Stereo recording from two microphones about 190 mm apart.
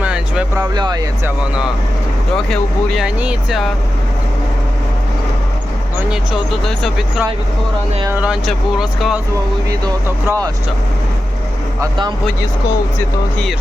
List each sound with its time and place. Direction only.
0.0 s a sound: 5° right (ahead or behind)
0.6 s speech: 20° right (ahead or behind)
2.3 s speech: centre (ahead or behind)
6.1 s speech: centre (ahead or behind)
9.6 s speech: 20° right (ahead or behind)
11.8 s speech: 20° right (ahead or behind)